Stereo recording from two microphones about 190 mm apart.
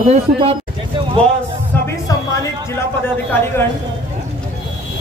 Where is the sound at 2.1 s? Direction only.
20° left (ahead or behind).